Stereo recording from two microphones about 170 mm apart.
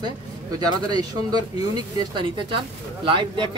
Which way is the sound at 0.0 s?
25° right (ahead or behind).